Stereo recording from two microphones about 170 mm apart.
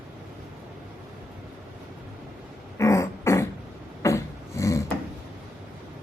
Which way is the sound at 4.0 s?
15° left (ahead or behind).